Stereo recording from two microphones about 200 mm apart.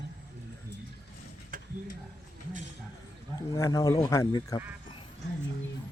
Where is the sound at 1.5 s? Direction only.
40° right (ahead or behind).